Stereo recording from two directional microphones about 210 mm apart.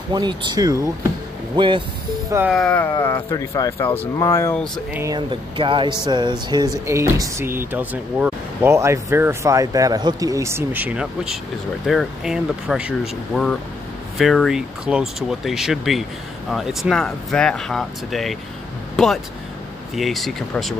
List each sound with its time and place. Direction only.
0.1 s speech: 20° right (ahead or behind)
2.5 s speech: 5° left (ahead or behind)
4.9 s speech: 15° right (ahead or behind); by 18.4 s centre (ahead or behind)
20.0 s speech: centre (ahead or behind)